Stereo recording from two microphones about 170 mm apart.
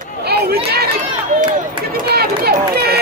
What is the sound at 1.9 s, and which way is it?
Speech, 65° right (ahead or behind).